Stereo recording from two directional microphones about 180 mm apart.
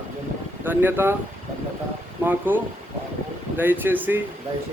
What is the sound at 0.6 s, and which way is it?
Speech, 10° right (ahead or behind).